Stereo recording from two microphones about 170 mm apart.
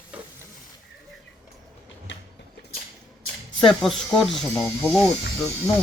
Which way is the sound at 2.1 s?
90° left.